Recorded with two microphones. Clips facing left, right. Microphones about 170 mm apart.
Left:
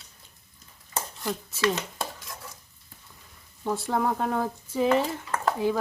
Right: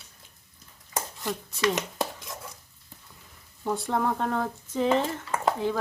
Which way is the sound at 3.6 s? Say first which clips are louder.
Left 1 dB; centre (ahead or behind).